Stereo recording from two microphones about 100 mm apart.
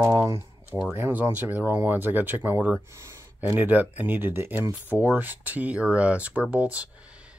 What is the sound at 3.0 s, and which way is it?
Speech, 25° right (ahead or behind).